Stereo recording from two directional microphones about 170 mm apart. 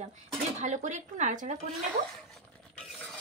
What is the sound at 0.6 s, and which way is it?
Speech, 45° right (ahead or behind).